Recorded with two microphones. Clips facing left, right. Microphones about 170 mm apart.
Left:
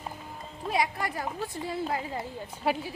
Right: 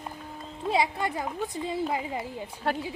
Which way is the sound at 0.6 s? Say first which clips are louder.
Right 3 dB; 25° right (ahead or behind).